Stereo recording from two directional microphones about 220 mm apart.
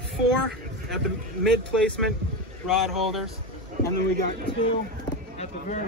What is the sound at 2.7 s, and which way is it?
Speech, centre (ahead or behind).